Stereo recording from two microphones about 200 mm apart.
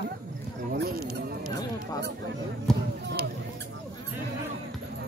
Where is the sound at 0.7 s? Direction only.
50° right (ahead or behind).